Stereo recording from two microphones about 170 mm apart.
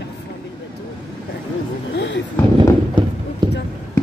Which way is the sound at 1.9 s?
90° left.